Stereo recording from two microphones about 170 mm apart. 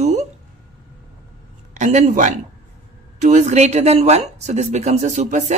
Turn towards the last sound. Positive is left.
turn(degrees=-45)  # may be behind; listen again after turning